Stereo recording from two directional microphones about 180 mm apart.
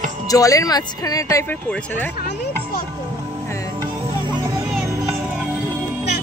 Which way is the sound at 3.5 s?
15° left (ahead or behind).